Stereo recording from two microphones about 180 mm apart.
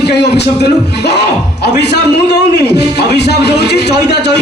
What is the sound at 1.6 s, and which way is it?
A man's voice, 65° left (ahead or behind).